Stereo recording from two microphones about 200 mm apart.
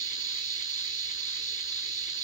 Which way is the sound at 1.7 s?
40° left (ahead or behind).